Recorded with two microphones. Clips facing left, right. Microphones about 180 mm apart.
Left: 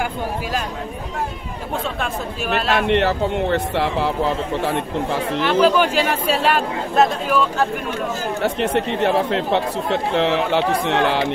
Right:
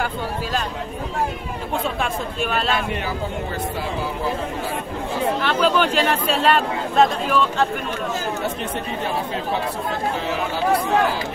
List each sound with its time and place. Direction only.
0.0 s speech: 10° left (ahead or behind)
2.0 s speech: 5° left (ahead or behind)
2.7 s speech: 75° left (ahead or behind)
5.4 s speech: 10° left (ahead or behind)
8.4 s speech: 80° left